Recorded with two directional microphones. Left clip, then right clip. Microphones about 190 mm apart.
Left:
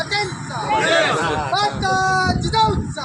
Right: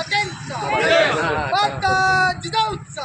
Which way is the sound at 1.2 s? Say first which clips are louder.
Even; 40° right (ahead or behind).